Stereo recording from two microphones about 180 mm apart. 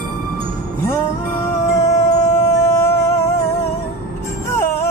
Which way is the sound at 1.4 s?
15° left (ahead or behind).